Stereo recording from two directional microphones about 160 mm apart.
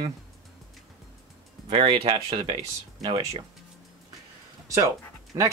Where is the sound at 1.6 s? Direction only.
35° right (ahead or behind).